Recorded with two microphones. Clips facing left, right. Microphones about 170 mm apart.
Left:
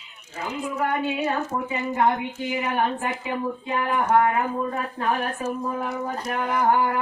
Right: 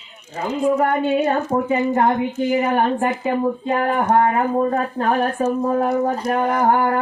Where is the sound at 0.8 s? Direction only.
45° right (ahead or behind).